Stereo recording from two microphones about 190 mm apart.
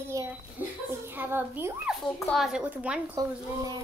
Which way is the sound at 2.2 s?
Centre (ahead or behind).